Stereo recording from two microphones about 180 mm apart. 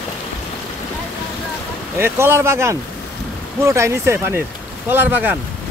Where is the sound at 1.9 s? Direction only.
15° right (ahead or behind).